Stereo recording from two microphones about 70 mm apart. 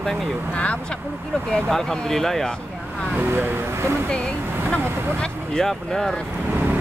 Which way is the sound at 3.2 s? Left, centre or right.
Right.